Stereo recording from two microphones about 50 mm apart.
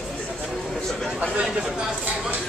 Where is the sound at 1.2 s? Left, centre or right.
Centre.